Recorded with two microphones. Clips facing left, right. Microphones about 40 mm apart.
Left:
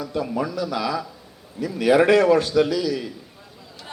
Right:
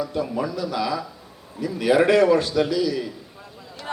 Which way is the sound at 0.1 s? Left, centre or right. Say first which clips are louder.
Even; left.